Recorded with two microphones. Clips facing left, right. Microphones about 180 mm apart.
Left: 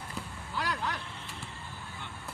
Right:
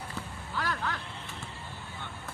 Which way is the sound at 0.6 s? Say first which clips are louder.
Even; 15° left (ahead or behind).